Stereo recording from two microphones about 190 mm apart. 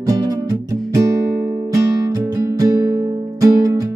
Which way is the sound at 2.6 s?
15° right (ahead or behind).